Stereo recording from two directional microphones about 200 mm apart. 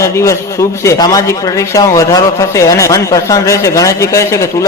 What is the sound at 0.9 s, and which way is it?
Speech, 20° left (ahead or behind).